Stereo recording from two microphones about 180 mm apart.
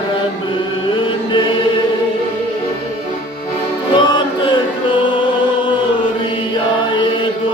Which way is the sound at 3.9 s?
25° left (ahead or behind).